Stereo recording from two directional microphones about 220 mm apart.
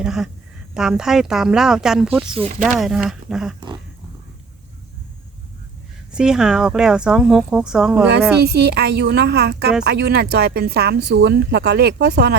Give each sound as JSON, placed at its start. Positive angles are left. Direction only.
{"t": 0.0, "sound": "speech", "side_deg": 0}
{"t": 2.3, "sound": "speech", "side_deg": -30}
{"t": 2.6, "sound": "speech", "side_deg": 0}
{"t": 6.1, "sound": "speech", "side_deg": -5}
{"t": 8.4, "sound": "a woman's voice", "side_deg": -50}